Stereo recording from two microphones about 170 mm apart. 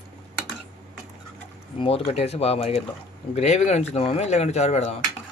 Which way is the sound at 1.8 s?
35° left (ahead or behind).